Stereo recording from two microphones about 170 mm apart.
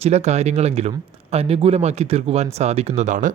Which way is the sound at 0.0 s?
40° right (ahead or behind).